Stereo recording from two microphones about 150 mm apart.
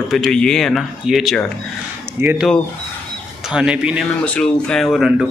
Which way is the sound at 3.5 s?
5° right (ahead or behind).